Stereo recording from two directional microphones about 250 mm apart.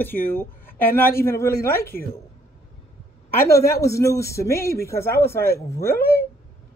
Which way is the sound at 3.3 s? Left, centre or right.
Centre.